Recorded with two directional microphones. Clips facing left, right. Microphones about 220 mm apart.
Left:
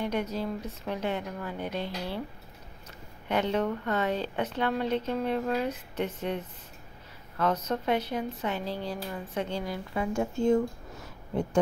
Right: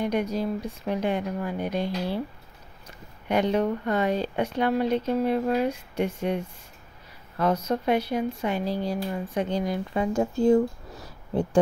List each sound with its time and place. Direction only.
0.0 s speech: 15° right (ahead or behind)
3.3 s speech: 15° right (ahead or behind)
10.1 s a sound: 35° right (ahead or behind)